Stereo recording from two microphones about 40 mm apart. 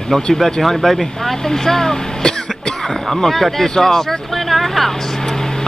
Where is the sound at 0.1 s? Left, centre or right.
Centre.